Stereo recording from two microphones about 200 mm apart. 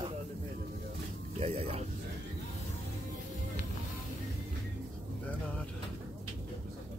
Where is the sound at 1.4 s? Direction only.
30° right (ahead or behind).